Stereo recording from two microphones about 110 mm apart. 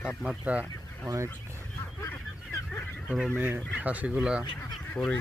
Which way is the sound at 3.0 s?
5° right (ahead or behind).